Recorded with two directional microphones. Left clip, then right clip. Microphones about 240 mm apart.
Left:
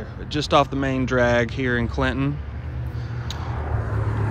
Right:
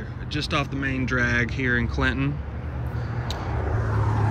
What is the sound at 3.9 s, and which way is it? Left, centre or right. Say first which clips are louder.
Vehicle: right 2 dB; centre.